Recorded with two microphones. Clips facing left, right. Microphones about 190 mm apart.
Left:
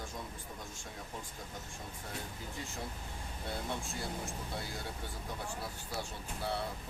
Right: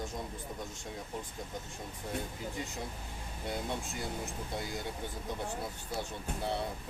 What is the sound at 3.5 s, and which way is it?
Speech, 20° right (ahead or behind).